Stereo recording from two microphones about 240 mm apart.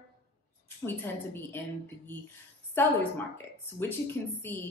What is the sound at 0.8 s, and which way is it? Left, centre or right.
Speech, centre.